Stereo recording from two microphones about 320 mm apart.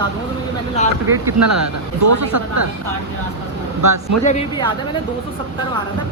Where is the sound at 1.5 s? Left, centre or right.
Right.